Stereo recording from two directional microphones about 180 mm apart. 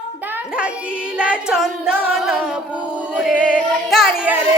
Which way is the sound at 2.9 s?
5° right (ahead or behind).